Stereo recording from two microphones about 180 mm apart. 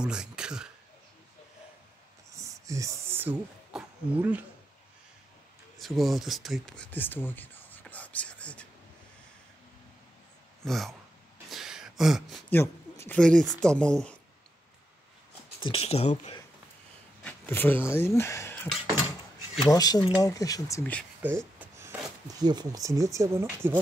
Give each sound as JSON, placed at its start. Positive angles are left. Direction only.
{"t": 0.0, "sound": "speech", "side_deg": -5}
{"t": 2.3, "sound": "a sound", "side_deg": -15}
{"t": 5.8, "sound": "speech", "side_deg": 0}
{"t": 10.6, "sound": "speech", "side_deg": 0}
{"t": 11.5, "sound": "a sound", "side_deg": -5}
{"t": 13.0, "sound": "speech", "side_deg": 5}
{"t": 15.6, "sound": "speech", "side_deg": 35}
{"t": 17.2, "sound": "a sound", "side_deg": 10}
{"t": 17.9, "sound": "speech", "side_deg": 15}
{"t": 21.2, "sound": "speech", "side_deg": -10}